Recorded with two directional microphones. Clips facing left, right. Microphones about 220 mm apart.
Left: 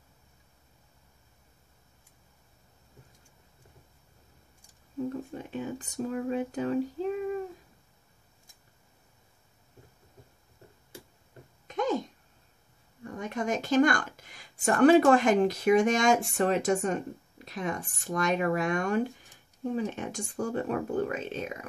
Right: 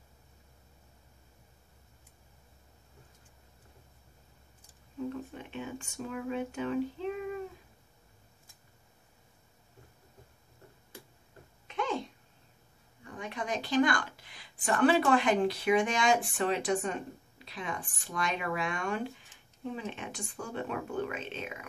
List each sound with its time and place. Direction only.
5.1 s speech: 40° left (ahead or behind)
11.6 s a sound: 40° left (ahead or behind)
13.0 s speech: 45° left (ahead or behind)